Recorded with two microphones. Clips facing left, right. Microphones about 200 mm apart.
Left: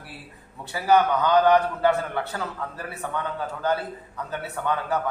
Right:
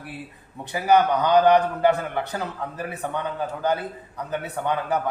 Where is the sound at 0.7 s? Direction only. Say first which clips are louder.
Right 1 dB; 15° right (ahead or behind).